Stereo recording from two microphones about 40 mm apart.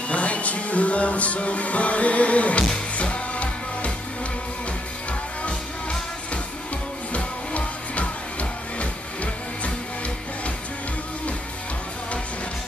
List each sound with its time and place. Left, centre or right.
0.1 s music: left
5.4 s music: left